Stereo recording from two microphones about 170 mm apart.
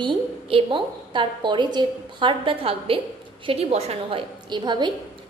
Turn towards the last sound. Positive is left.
turn(degrees=-25)  # may be behind; listen again after turning